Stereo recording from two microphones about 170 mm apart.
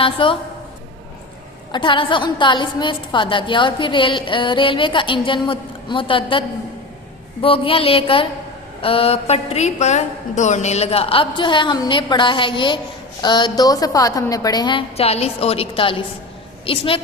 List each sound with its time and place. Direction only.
0.0 s a woman's voice: 30° left (ahead or behind)
1.7 s a woman's voice: 30° left (ahead or behind)
7.4 s a woman's voice: 30° left (ahead or behind)